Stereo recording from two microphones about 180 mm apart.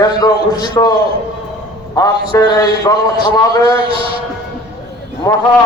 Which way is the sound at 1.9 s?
20° left (ahead or behind).